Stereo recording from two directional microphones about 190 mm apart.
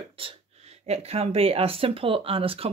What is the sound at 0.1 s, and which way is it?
Speech, 30° right (ahead or behind).